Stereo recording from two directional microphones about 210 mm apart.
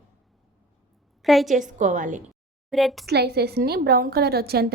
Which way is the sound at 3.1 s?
50° right (ahead or behind).